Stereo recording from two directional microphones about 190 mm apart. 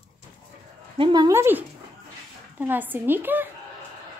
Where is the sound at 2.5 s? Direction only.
10° right (ahead or behind).